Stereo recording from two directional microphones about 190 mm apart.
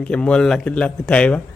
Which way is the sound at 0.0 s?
5° left (ahead or behind).